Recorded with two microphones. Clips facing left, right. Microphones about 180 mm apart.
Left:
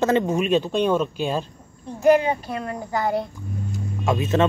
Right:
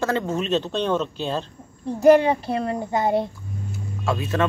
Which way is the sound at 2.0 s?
30° right (ahead or behind).